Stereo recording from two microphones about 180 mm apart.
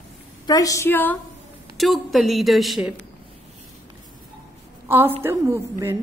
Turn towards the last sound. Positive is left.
turn(degrees=-15)  # may be behind; listen again after turning